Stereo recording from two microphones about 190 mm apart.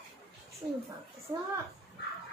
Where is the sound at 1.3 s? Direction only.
15° right (ahead or behind).